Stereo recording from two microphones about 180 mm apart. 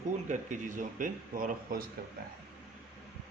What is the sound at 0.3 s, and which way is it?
Speech, 45° right (ahead or behind).